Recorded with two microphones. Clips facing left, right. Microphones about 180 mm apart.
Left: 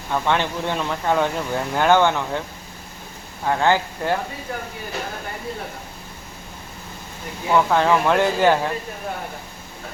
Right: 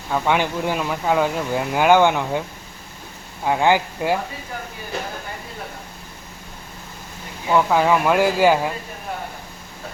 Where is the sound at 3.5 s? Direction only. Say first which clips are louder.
Right 1 dB; 15° right (ahead or behind).